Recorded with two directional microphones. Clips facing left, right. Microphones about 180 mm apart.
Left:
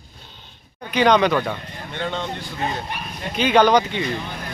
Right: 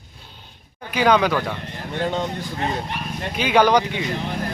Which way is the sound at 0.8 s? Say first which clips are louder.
Left 1 dB; 5° right (ahead or behind).